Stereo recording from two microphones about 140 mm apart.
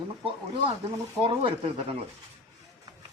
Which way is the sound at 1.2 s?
40° right (ahead or behind).